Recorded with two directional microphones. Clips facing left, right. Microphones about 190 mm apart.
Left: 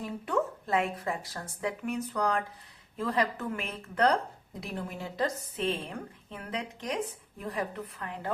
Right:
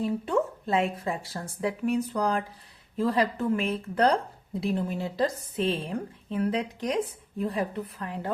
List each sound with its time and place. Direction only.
0.0 s a woman's voice: 30° right (ahead or behind)